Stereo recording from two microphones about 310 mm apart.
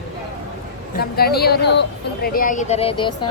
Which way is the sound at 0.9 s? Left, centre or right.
Left.